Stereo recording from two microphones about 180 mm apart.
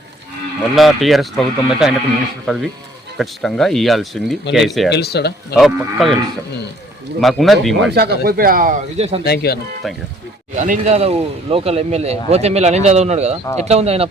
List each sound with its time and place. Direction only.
0.8 s speech: centre (ahead or behind)
4.9 s speech: 65° left (ahead or behind)
5.5 s speech: centre (ahead or behind)
7.2 s speech: centre (ahead or behind)
7.9 s speech: 65° right (ahead or behind)
9.0 s speech: 35° right (ahead or behind)
9.2 s speech: 60° left (ahead or behind)
10.5 s speech: 45° right (ahead or behind)